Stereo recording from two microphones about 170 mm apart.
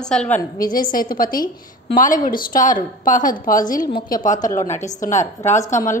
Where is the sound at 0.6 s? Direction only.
55° left (ahead or behind).